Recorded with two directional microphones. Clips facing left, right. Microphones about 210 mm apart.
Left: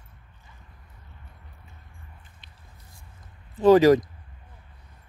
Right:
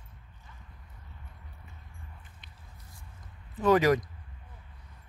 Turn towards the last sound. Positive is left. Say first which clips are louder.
# left 8 dB
turn(degrees=30)  # may be behind; listen again after turning